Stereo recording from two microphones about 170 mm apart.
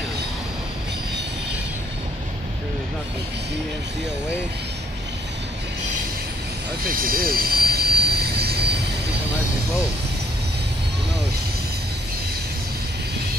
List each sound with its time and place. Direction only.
7.0 s vehicle: 60° right (ahead or behind)